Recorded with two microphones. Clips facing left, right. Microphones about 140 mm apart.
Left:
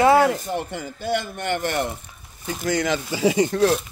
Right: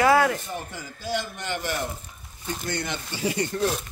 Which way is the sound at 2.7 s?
90° left.